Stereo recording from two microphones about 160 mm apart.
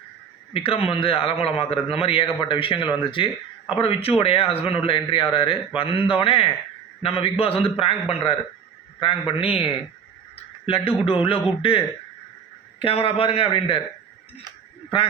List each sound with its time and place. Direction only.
0.5 s speech: 35° left (ahead or behind)
9.0 s a man's voice: 35° left (ahead or behind)
12.8 s speech: 35° left (ahead or behind)